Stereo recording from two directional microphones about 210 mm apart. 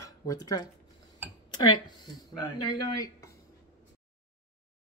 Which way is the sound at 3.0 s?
15° left (ahead or behind).